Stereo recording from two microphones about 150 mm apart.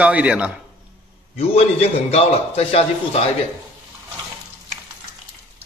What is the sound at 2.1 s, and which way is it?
A man's voice, 45° left (ahead or behind).